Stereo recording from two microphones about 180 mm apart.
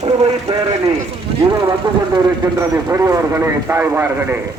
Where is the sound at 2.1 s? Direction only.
15° right (ahead or behind).